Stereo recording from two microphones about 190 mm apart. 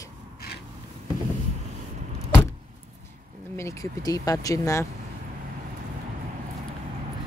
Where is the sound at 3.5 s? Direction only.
15° left (ahead or behind).